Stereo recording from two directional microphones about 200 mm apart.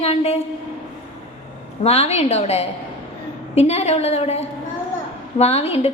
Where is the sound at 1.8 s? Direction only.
30° left (ahead or behind).